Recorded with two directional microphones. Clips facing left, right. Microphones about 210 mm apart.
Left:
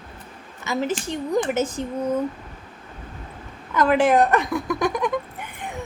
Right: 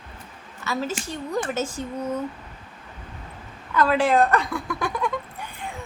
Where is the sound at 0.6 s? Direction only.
20° left (ahead or behind).